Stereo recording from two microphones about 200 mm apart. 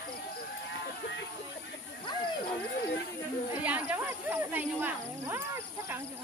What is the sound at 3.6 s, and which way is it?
Chatter, 5° right (ahead or behind).